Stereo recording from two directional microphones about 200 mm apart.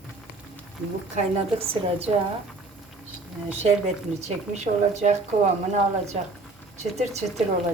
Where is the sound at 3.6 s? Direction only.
35° right (ahead or behind).